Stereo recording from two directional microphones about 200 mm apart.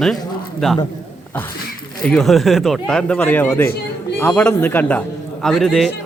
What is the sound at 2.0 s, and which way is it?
A man's voice, 5° left (ahead or behind).